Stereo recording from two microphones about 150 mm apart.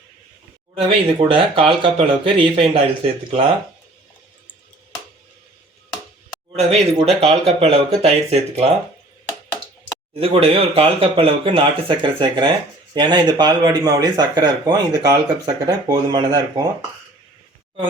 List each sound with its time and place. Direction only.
1.2 s speech: 35° right (ahead or behind)
6.6 s speech: 40° right (ahead or behind)
10.2 s speech: 40° right (ahead or behind)